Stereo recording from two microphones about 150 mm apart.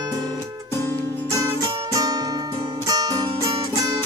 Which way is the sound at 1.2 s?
20° right (ahead or behind).